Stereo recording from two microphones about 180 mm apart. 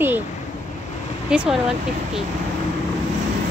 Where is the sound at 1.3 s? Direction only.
5° right (ahead or behind).